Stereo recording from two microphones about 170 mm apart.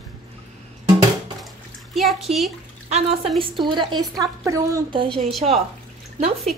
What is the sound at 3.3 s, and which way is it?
A woman's voice, 30° right (ahead or behind).